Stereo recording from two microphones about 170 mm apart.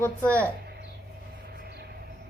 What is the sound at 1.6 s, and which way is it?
Train, 70° right (ahead or behind).